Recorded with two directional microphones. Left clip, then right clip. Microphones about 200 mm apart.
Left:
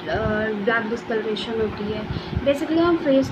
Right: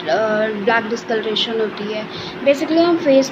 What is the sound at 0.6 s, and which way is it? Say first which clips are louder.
A woman's voice: right 4 dB; 15° left (ahead or behind).